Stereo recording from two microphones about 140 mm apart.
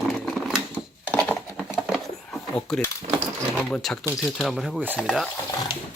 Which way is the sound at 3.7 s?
5° left (ahead or behind).